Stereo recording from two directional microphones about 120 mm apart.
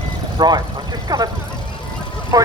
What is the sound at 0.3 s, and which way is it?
Speech, 35° right (ahead or behind).